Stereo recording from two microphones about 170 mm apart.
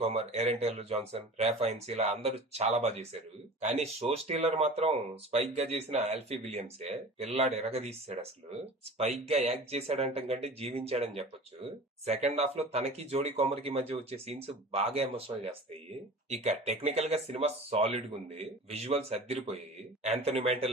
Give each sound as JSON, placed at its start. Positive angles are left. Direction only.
{"t": 0.0, "sound": "speech", "side_deg": -40}
{"t": 16.3, "sound": "speech", "side_deg": -40}